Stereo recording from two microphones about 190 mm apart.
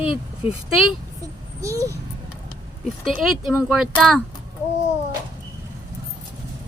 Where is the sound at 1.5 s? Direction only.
15° right (ahead or behind).